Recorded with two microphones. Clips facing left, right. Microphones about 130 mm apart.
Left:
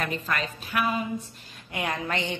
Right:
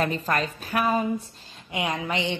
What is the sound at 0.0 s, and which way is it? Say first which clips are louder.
A woman's voice: right 4 dB; 35° right (ahead or behind).